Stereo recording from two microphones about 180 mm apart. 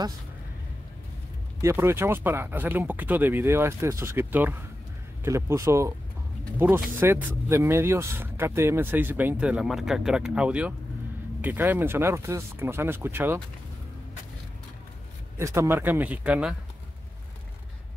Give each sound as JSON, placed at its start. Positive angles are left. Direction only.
{"t": 1.6, "sound": "speech", "side_deg": -15}
{"t": 15.3, "sound": "speech", "side_deg": -15}